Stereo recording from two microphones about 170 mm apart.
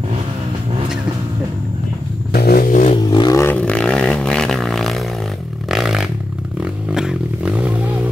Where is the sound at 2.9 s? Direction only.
25° left (ahead or behind).